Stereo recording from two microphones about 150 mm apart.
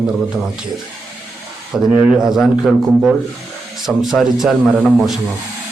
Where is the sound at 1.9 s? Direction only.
5° right (ahead or behind).